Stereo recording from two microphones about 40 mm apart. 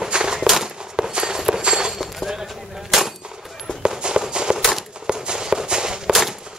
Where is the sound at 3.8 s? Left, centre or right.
Right.